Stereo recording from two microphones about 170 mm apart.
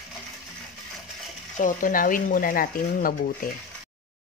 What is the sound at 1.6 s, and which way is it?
Speech, 50° left (ahead or behind).